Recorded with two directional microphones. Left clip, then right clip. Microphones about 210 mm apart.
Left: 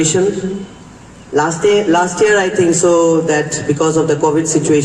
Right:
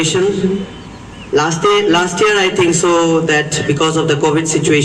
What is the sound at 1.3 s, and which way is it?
A man's voice, 50° left (ahead or behind).